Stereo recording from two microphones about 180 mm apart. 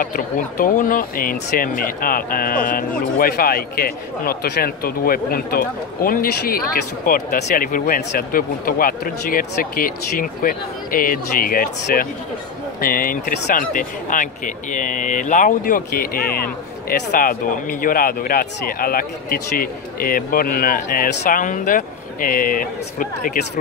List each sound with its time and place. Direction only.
0.0 s speech: 50° left (ahead or behind)